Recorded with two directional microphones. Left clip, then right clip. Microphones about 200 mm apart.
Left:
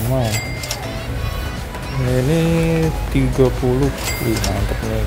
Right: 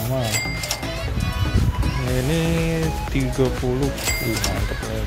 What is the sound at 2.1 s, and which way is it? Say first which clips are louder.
Speech: left 6 dB; centre (ahead or behind).